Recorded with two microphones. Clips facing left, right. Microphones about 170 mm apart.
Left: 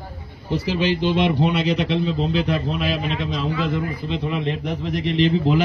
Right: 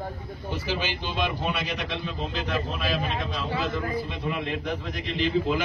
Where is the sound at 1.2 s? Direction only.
80° left.